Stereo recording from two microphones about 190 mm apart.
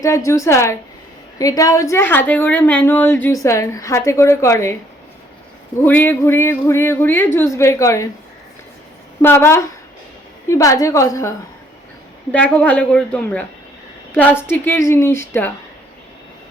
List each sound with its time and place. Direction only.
0.0 s a woman's voice: 15° left (ahead or behind)
5.8 s a woman's voice: 10° left (ahead or behind)
9.2 s a woman's voice: 15° left (ahead or behind)